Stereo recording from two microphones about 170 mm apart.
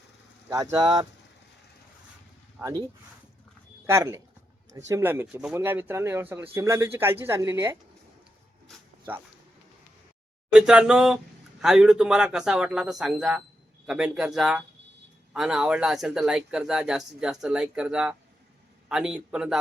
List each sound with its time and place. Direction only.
0.4 s speech: 20° right (ahead or behind)
2.6 s speech: 10° right (ahead or behind)
3.8 s speech: 15° right (ahead or behind)
10.5 s speech: 5° right (ahead or behind)